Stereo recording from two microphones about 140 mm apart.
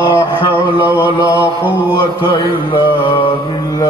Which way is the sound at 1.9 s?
35° left (ahead or behind).